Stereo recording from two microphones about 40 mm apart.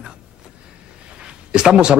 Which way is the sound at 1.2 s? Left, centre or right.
Right.